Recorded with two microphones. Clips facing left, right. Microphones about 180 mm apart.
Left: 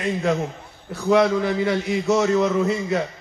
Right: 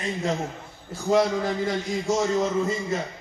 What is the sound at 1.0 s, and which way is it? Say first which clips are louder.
A man's voice: left 4 dB; 65° left (ahead or behind).